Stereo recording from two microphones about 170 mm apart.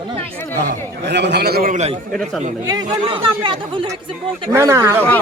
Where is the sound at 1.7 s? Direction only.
40° right (ahead or behind).